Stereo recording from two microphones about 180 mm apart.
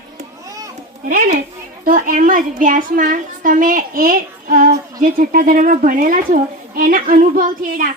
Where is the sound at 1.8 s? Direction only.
50° right (ahead or behind).